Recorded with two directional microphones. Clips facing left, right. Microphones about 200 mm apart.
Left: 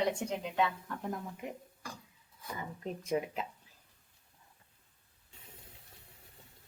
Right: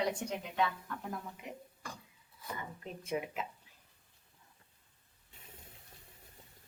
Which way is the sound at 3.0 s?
35° left (ahead or behind).